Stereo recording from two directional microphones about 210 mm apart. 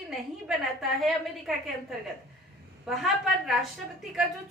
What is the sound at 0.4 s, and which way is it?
A woman's voice, centre (ahead or behind).